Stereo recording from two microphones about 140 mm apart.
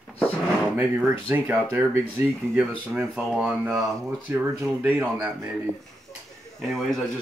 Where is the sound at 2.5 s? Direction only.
10° right (ahead or behind).